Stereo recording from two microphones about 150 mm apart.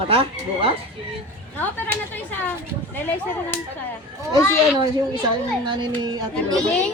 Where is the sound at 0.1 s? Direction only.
40° right (ahead or behind).